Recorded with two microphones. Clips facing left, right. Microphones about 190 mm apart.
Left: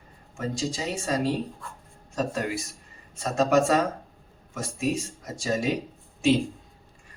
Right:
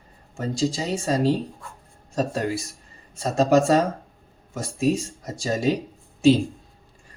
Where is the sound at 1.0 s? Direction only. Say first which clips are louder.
Right 5 dB; 35° right (ahead or behind).